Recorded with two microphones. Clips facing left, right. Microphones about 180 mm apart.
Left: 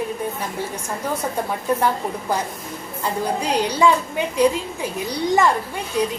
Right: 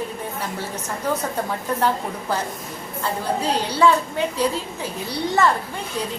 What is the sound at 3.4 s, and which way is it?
Speech, 15° left (ahead or behind).